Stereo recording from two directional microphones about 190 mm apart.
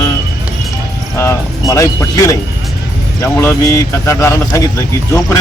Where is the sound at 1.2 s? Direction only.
15° left (ahead or behind).